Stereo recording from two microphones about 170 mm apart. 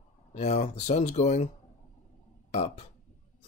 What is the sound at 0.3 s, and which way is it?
Speech, 40° left (ahead or behind).